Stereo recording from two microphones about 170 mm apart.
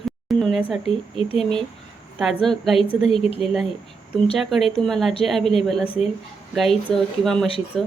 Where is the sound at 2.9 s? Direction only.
Centre (ahead or behind).